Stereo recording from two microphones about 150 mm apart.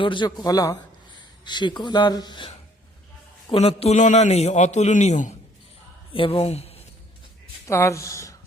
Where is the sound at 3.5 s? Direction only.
40° left (ahead or behind).